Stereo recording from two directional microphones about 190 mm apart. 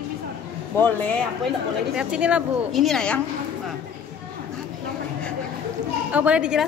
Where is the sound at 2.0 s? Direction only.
5° right (ahead or behind).